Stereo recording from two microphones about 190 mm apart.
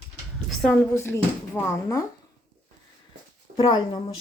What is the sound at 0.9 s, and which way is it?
Speech, 15° left (ahead or behind).